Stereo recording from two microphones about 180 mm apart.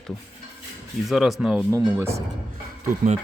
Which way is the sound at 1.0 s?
Centre (ahead or behind).